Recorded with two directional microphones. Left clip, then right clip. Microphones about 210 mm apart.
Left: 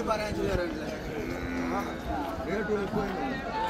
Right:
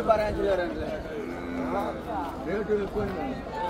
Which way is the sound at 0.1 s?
30° left (ahead or behind).